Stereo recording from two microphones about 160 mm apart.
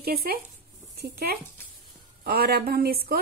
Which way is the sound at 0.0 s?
70° right (ahead or behind).